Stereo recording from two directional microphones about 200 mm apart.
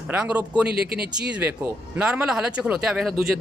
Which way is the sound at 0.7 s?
50° right (ahead or behind).